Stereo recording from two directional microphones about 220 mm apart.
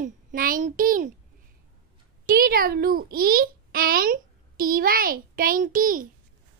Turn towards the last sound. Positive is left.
turn(degrees=-40)  # may be behind; listen again after turning